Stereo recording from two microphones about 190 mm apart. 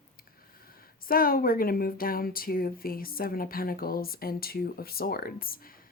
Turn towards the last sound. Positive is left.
turn(degrees=50)  # may be behind; listen again after turning